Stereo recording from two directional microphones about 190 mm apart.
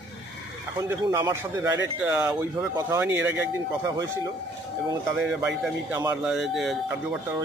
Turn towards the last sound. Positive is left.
turn(degrees=0)  # may be behind; listen again after turning